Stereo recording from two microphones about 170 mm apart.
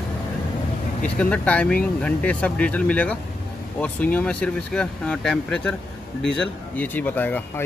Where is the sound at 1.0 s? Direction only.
5° left (ahead or behind).